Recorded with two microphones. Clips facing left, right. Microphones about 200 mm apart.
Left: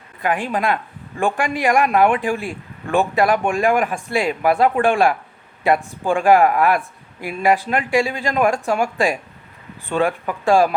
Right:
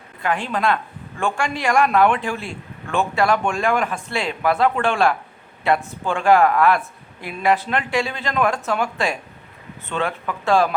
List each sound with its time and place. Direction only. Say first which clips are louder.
0.2 s speech: left 2 dB; 15° left (ahead or behind)